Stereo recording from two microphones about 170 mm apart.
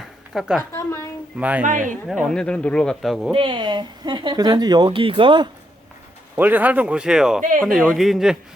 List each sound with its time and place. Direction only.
0.3 s speech: 5° right (ahead or behind)
0.7 s speech: 15° left (ahead or behind)
1.4 s speech: 10° right (ahead or behind)
1.6 s speech: 50° right (ahead or behind)
2.0 s speech: centre (ahead or behind)
3.3 s speech: 30° right (ahead or behind)
6.3 s speech: 10° right (ahead or behind)